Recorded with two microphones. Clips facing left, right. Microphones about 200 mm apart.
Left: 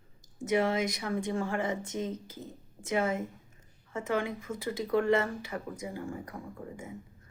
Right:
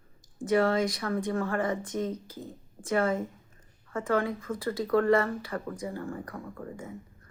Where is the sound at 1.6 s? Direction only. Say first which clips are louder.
Right 3 dB; 25° left (ahead or behind).